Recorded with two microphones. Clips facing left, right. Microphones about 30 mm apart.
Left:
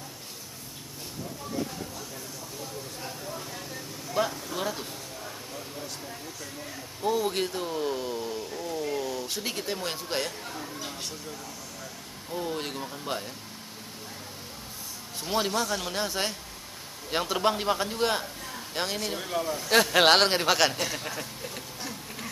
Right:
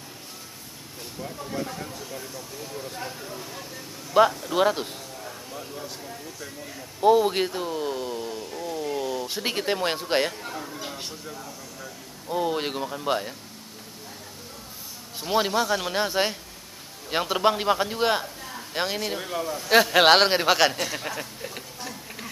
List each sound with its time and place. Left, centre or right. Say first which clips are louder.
1.5 s speech: right 1 dB; right
3.1 s speech: right 1 dB; centre
4.2 s speech: right 10 dB; right
5.2 s a sound: right 2 dB; centre
7.0 s speech: right 8 dB; right
9.4 s speech: right 6 dB; right
10.4 s speech: right 3 dB; centre
15.1 s a man's voice: right 4 dB; centre